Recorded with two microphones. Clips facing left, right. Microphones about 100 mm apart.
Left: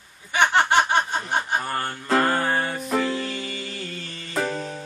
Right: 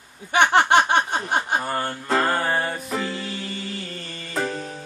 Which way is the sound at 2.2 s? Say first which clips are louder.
Even; centre (ahead or behind).